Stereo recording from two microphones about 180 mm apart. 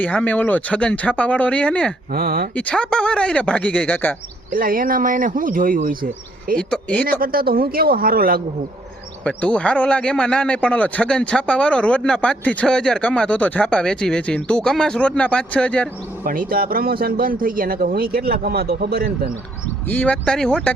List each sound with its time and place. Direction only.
0.0 s speech: 10° left (ahead or behind)
2.1 s speech: 55° right (ahead or behind)
2.6 s speech: 5° left (ahead or behind)
4.5 s speech: 50° right (ahead or behind)
6.6 s speech: 5° left (ahead or behind)
7.0 s speech: 55° right (ahead or behind)
9.2 s a man's voice: 5° left (ahead or behind)
16.2 s speech: 50° right (ahead or behind)
19.9 s speech: 10° left (ahead or behind)